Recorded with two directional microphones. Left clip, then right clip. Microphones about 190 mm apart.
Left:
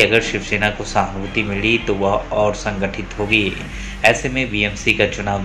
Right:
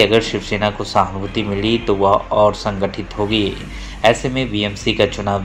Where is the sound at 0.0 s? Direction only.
25° right (ahead or behind).